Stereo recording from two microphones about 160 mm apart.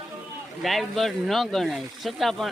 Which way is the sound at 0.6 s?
Centre (ahead or behind).